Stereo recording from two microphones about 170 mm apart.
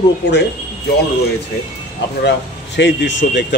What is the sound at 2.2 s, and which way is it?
Speech, 90° left.